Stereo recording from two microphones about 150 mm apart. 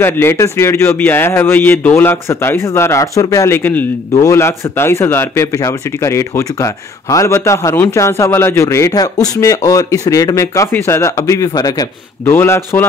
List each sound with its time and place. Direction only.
0.0 s speech: 15° left (ahead or behind)